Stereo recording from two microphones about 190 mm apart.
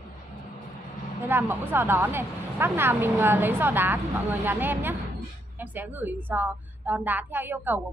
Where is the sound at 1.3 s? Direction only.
10° right (ahead or behind).